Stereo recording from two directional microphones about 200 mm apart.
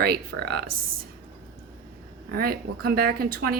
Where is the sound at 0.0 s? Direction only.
50° right (ahead or behind).